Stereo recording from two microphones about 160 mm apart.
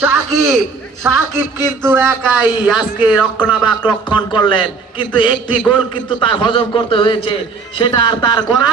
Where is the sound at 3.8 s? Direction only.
30° left (ahead or behind).